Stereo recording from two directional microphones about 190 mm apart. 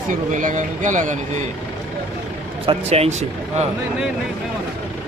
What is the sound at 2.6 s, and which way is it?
Speech, 30° right (ahead or behind).